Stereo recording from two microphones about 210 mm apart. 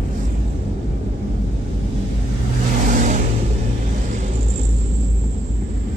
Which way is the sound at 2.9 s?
40° right (ahead or behind).